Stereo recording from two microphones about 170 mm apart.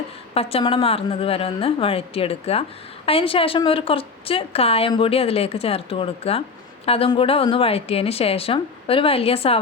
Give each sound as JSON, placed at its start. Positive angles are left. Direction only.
{"t": 0.3, "sound": "a woman's voice", "side_deg": 35}